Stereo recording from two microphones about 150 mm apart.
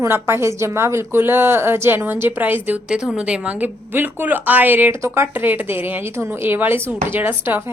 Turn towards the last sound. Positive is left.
turn(degrees=-15)  # may be behind; listen again after turning